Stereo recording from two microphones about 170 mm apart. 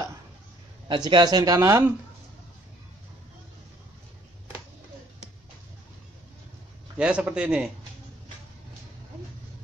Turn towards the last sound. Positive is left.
turn(degrees=-5)  # may be behind; listen again after turning